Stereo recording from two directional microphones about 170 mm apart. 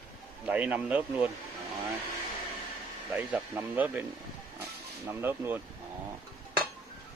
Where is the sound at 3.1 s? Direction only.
10° right (ahead or behind).